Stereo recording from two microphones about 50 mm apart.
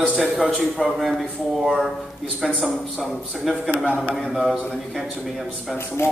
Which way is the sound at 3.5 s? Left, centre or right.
Centre.